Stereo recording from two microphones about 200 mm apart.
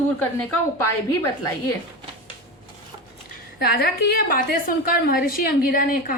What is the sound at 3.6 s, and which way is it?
A woman's voice, 50° left (ahead or behind).